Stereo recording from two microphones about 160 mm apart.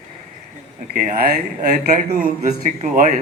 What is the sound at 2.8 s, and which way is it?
Speech, 50° right (ahead or behind).